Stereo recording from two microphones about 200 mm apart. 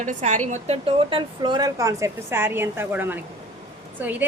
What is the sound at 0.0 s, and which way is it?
A woman's voice, 40° right (ahead or behind).